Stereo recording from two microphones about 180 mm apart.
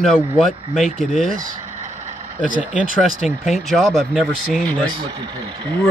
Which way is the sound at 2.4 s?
45° right (ahead or behind).